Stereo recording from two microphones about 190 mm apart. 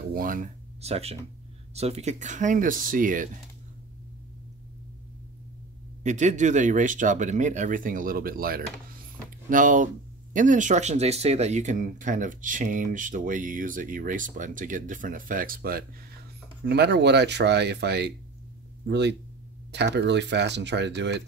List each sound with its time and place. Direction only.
0.1 s speech: 45° right (ahead or behind)
0.7 s speech: 35° right (ahead or behind)
6.0 s speech: 40° right (ahead or behind)
16.6 s speech: 60° right (ahead or behind)